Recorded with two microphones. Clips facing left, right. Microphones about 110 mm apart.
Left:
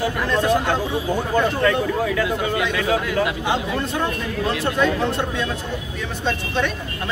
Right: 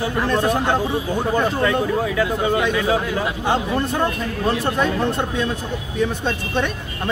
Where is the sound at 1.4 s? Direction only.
15° right (ahead or behind).